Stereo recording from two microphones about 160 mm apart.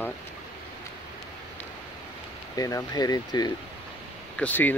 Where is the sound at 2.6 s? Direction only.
20° left (ahead or behind).